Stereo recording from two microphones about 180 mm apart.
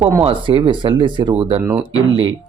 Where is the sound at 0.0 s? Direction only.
10° right (ahead or behind).